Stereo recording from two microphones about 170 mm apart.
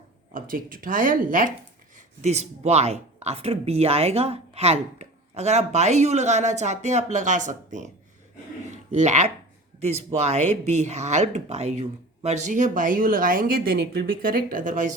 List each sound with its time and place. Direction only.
0.3 s speech: 55° right (ahead or behind)
2.2 s speech: 40° right (ahead or behind)
8.7 s a sound: 45° right (ahead or behind)
9.8 s speech: 40° right (ahead or behind)